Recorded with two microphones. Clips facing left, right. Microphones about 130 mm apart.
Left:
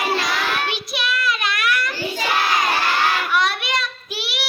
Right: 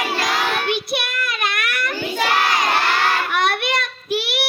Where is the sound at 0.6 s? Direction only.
55° right (ahead or behind).